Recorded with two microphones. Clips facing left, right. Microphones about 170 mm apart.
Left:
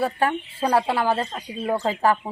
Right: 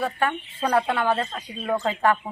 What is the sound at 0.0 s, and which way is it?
A woman's voice, 30° left (ahead or behind).